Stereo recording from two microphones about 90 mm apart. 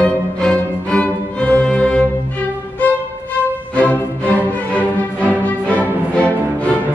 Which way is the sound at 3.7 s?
15° left (ahead or behind).